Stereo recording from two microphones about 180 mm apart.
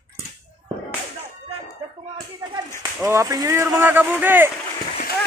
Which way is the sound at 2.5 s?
15° right (ahead or behind).